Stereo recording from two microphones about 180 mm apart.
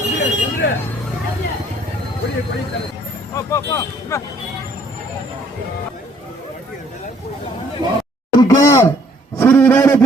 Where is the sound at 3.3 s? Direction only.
15° left (ahead or behind).